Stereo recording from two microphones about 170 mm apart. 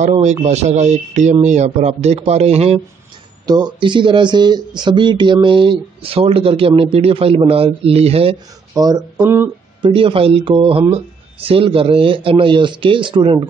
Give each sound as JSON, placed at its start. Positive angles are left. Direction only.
{"t": 0.0, "sound": "speech", "side_deg": -45}
{"t": 3.4, "sound": "speech", "side_deg": -25}
{"t": 8.7, "sound": "speech", "side_deg": -25}
{"t": 9.1, "sound": "speech", "side_deg": -10}
{"t": 9.8, "sound": "speech", "side_deg": -30}